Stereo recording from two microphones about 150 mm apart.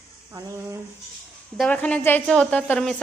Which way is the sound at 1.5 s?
5° left (ahead or behind).